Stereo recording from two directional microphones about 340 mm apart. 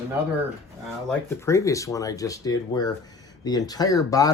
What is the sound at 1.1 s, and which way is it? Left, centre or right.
Speech, centre.